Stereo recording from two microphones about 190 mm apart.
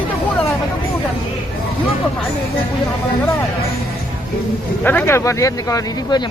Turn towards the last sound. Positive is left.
turn(degrees=15)  # may be behind; listen again after turning